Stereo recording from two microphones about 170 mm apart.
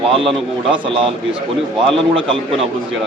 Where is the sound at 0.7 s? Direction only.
30° right (ahead or behind).